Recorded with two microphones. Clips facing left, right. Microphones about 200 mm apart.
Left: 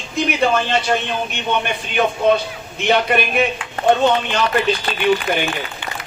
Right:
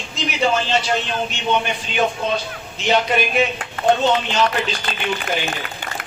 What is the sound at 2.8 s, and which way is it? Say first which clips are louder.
Speech: left 2 dB; 55° left (ahead or behind).